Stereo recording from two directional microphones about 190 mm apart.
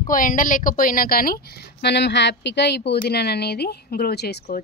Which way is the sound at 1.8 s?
65° left (ahead or behind).